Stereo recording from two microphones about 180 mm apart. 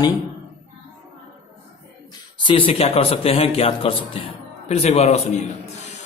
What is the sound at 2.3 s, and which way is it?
A man's voice, 30° left (ahead or behind).